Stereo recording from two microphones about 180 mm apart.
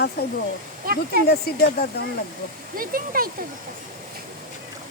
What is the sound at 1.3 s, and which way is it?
Speech, 60° left (ahead or behind).